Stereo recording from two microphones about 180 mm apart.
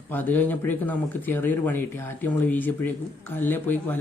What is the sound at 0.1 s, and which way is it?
Speech, 10° left (ahead or behind).